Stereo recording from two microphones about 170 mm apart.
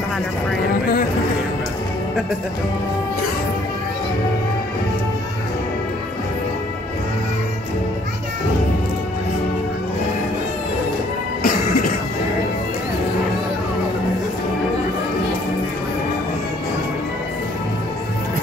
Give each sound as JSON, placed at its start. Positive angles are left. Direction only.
{"t": 11.4, "sound": "music", "side_deg": 60}